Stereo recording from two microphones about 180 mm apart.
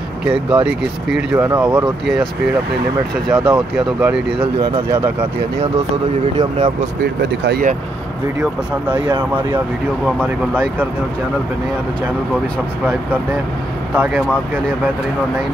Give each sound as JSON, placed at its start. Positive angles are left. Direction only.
{"t": 0.2, "sound": "speech", "side_deg": -5}
{"t": 3.3, "sound": "speech", "side_deg": -5}
{"t": 7.0, "sound": "speech", "side_deg": -60}
{"t": 8.4, "sound": "speech", "side_deg": -10}
{"t": 13.9, "sound": "speech", "side_deg": -10}